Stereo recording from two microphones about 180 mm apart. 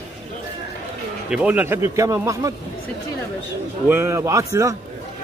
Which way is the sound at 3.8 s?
15° right (ahead or behind).